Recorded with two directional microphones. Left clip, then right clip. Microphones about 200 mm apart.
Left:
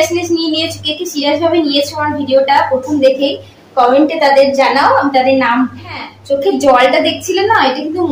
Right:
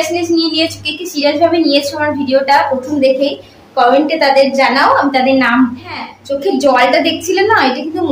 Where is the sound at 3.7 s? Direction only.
5° right (ahead or behind).